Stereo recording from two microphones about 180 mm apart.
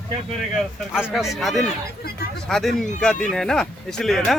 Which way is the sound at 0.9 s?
Centre (ahead or behind).